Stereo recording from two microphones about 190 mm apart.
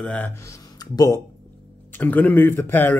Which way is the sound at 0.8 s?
20° left (ahead or behind).